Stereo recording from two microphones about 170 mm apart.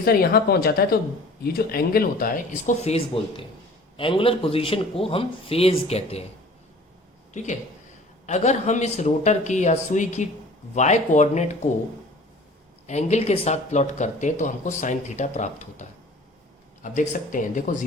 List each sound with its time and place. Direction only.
0.0 s speech: 65° left (ahead or behind)
2.6 s a man's voice: 40° left (ahead or behind)
7.3 s speech: 45° left (ahead or behind)
12.9 s speech: 40° left (ahead or behind)